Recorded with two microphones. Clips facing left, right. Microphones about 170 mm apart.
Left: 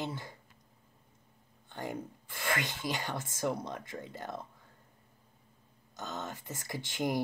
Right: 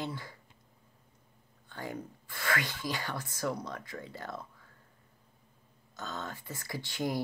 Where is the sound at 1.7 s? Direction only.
20° left (ahead or behind).